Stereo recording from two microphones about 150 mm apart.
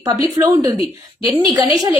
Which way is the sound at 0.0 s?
25° right (ahead or behind).